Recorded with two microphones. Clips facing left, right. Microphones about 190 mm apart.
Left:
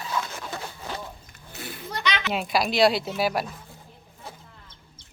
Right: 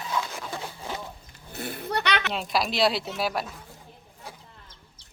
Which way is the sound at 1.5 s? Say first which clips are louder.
Right 5 dB; 55° right (ahead or behind).